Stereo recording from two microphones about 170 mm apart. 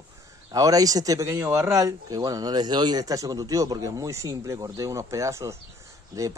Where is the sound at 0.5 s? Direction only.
20° right (ahead or behind).